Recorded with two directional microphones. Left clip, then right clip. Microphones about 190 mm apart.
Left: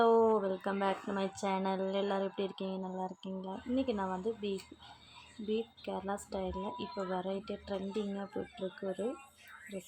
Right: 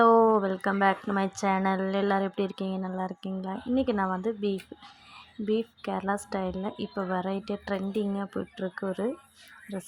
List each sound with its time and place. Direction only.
0.0 s speech: 25° right (ahead or behind)